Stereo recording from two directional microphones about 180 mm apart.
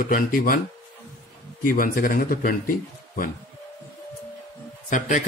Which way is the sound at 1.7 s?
50° left (ahead or behind).